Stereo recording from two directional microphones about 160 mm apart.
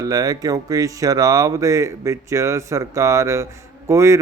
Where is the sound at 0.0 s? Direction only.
20° right (ahead or behind).